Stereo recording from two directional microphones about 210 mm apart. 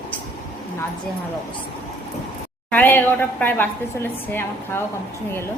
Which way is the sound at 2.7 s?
10° left (ahead or behind).